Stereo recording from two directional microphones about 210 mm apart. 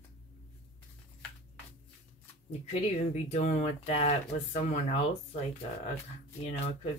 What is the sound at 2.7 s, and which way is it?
Speech, 35° left (ahead or behind).